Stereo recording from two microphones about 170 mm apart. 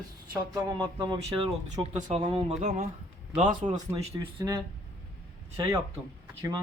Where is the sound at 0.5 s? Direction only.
25° right (ahead or behind).